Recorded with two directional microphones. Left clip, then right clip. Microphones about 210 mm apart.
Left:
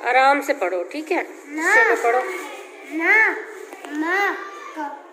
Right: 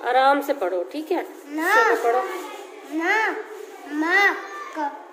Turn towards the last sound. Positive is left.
turn(degrees=0)  # may be behind; listen again after turning